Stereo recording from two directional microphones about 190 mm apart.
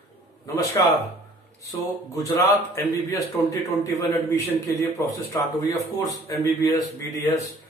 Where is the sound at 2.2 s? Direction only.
15° left (ahead or behind).